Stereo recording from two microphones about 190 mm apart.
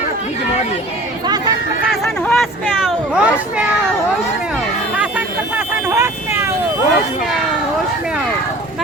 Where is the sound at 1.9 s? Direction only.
Centre (ahead or behind).